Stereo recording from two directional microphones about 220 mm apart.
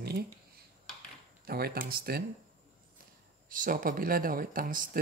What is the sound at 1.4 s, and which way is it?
Speech, 45° right (ahead or behind).